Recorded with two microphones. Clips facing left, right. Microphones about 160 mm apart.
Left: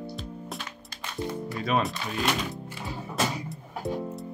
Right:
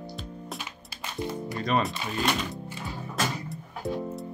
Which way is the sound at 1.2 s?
15° right (ahead or behind).